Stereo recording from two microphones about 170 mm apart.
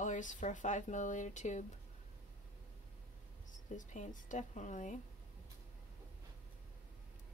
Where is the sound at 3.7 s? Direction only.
50° left (ahead or behind).